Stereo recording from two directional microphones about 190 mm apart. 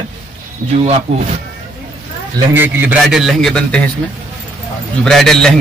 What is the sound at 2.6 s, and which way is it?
A man's voice, 10° right (ahead or behind).